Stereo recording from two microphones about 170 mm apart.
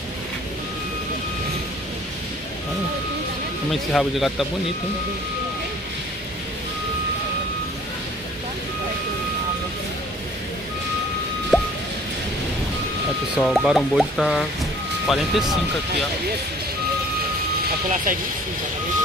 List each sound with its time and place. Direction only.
3.9 s speech: centre (ahead or behind)
11.5 s music: centre (ahead or behind)
13.4 s speech: centre (ahead or behind)
17.8 s speech: 50° right (ahead or behind)